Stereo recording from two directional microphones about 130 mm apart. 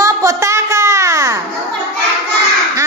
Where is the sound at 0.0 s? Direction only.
25° right (ahead or behind).